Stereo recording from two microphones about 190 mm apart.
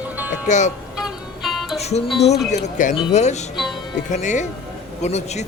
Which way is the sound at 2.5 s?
40° left (ahead or behind).